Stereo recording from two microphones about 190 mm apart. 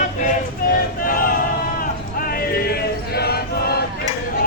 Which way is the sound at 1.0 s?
50° left (ahead or behind).